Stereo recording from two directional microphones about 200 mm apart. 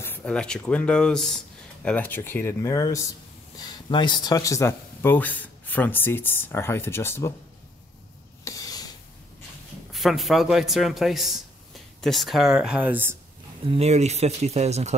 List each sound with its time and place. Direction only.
0.0 s a man's voice: 10° left (ahead or behind)
8.5 s a sound: 20° left (ahead or behind)
9.9 s a man's voice: centre (ahead or behind)
13.7 s speech: 30° right (ahead or behind)